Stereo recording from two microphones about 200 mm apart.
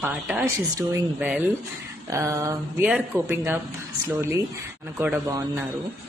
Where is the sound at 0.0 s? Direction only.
5° right (ahead or behind).